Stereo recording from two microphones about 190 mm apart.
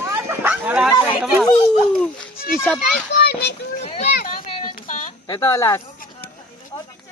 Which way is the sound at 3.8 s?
35° left (ahead or behind).